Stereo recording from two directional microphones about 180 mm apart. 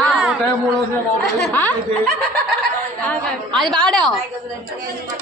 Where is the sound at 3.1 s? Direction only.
5° left (ahead or behind).